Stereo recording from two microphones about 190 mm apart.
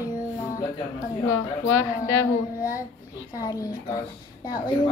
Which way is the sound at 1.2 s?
90° left.